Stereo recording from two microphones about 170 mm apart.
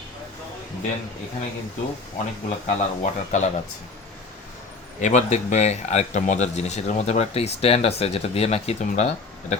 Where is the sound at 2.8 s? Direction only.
45° left (ahead or behind).